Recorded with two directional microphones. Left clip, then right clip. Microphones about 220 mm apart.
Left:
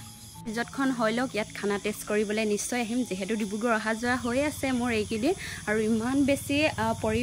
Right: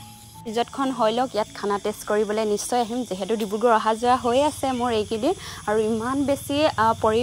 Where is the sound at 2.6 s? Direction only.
5° right (ahead or behind).